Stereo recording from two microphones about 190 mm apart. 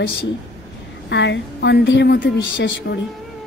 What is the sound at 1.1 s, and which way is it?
A woman's voice, 65° left (ahead or behind).